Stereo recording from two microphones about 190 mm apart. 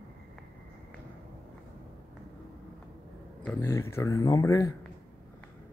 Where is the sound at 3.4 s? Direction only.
10° left (ahead or behind).